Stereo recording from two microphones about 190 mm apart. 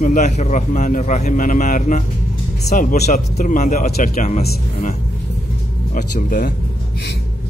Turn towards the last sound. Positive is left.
turn(degrees=45)  # may be behind; listen again after turning